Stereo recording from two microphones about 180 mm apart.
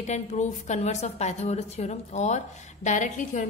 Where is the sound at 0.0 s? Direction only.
40° left (ahead or behind).